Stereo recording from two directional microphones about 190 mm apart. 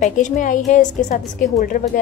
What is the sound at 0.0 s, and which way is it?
A woman's voice, 40° left (ahead or behind).